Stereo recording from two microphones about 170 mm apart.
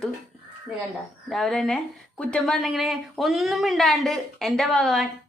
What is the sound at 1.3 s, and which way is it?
Speech, centre (ahead or behind).